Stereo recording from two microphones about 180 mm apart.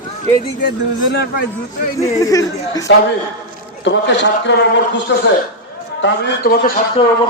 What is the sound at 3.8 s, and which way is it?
Speech, 80° left.